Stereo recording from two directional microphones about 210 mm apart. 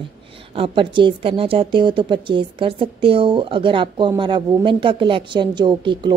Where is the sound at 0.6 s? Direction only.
25° right (ahead or behind).